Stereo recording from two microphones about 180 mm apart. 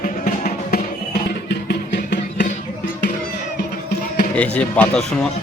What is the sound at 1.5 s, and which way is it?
Music, 70° left (ahead or behind).